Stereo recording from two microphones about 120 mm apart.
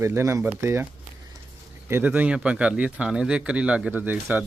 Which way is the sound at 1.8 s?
20° right (ahead or behind).